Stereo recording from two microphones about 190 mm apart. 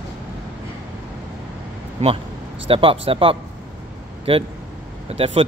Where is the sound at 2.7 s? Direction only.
30° right (ahead or behind).